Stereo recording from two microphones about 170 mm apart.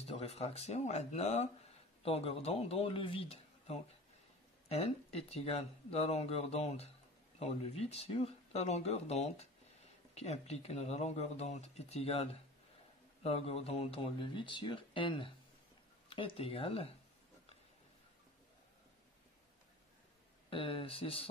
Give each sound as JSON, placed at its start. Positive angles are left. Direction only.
{"t": 0.0, "sound": "speech", "side_deg": 35}
{"t": 20.4, "sound": "speech", "side_deg": 30}